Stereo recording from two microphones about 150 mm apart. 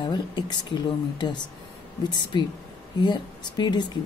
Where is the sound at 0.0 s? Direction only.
30° left (ahead or behind).